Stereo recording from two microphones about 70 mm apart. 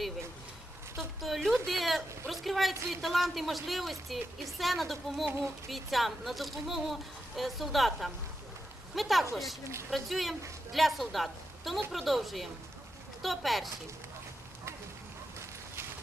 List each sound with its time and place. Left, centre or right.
0.9 s speech: centre
15.4 s clip-clop: right